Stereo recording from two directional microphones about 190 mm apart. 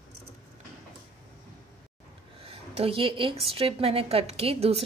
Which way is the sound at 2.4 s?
30° right (ahead or behind).